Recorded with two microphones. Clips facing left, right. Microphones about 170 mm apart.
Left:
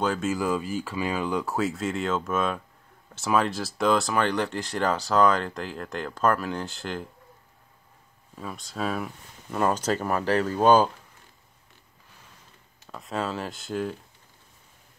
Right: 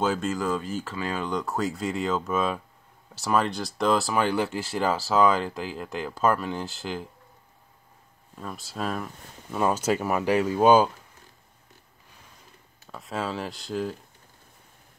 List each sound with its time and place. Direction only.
0.0 s speech: 5° right (ahead or behind)
0.3 s speech: 10° left (ahead or behind)
8.4 s speech: centre (ahead or behind)
12.9 s speech: centre (ahead or behind)